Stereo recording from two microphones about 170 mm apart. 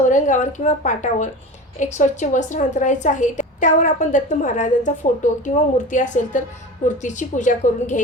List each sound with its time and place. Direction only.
0.0 s a woman's voice: 45° left (ahead or behind)